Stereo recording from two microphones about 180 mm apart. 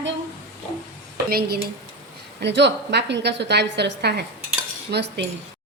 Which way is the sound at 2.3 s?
75° right (ahead or behind).